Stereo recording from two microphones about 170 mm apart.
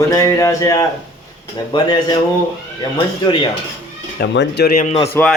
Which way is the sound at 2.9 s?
25° left (ahead or behind).